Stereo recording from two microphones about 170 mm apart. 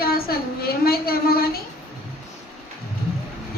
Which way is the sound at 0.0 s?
60° left (ahead or behind).